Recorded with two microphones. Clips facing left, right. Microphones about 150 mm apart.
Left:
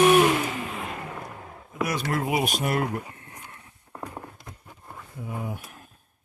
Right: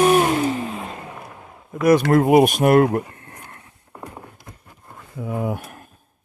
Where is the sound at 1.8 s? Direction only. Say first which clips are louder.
Right 14 dB; 55° right (ahead or behind).